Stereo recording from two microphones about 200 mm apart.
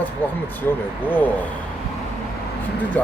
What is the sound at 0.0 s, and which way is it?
Speech, 10° left (ahead or behind).